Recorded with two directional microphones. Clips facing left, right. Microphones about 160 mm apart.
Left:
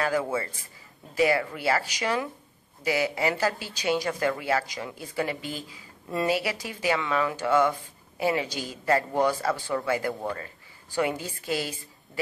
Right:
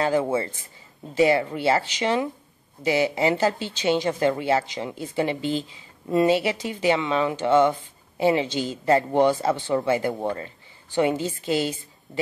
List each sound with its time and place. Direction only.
0.0 s speech: 25° right (ahead or behind)